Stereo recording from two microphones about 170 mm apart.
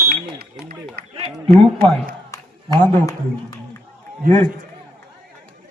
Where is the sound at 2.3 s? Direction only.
20° left (ahead or behind).